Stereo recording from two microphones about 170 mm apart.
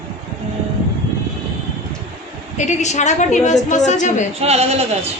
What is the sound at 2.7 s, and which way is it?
A woman's voice, 45° left (ahead or behind).